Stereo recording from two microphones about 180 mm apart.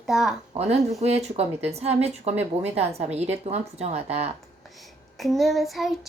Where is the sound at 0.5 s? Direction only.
35° right (ahead or behind).